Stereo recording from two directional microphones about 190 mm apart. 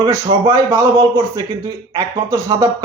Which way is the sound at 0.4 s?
15° right (ahead or behind).